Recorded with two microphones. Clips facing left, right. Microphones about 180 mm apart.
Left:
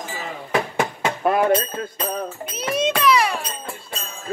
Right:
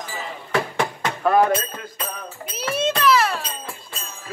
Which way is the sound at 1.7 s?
40° left (ahead or behind).